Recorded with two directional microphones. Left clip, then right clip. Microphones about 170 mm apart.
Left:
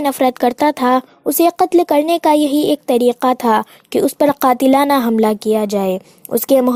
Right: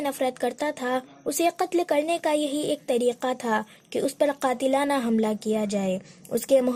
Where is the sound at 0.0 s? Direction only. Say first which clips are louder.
Left 12 dB; 40° left (ahead or behind).